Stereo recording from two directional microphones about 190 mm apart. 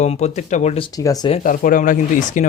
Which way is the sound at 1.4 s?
45° left (ahead or behind).